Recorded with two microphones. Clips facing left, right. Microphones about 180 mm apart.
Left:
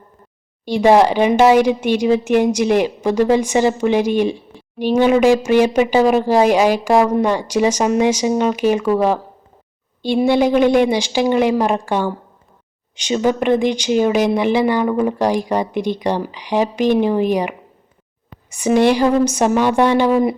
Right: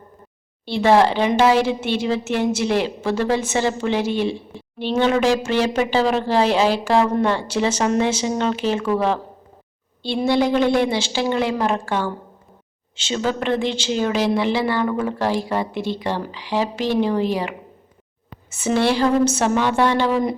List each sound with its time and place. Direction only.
0.6 s speech: 15° left (ahead or behind)
18.5 s speech: 15° left (ahead or behind)